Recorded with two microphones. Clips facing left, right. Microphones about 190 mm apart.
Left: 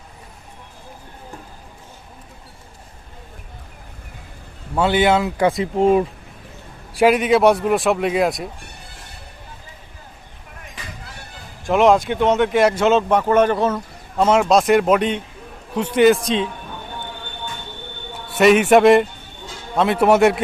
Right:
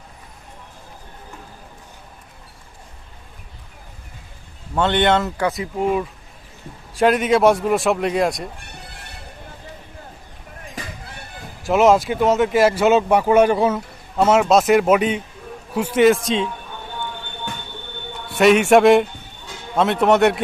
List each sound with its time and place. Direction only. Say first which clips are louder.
4.7 s a man's voice: left 1 dB; 5° left (ahead or behind)
5.4 s speech: left 5 dB; 25° left (ahead or behind)
6.9 s speech: left 1 dB; 5° left (ahead or behind)
11.6 s speech: even; 5° right (ahead or behind)
18.3 s speech: even; centre (ahead or behind)